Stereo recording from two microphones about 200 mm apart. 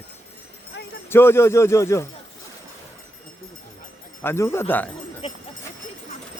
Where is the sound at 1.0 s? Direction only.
10° left (ahead or behind).